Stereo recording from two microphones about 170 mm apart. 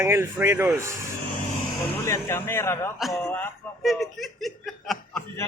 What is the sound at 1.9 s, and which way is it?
Speech, 15° left (ahead or behind).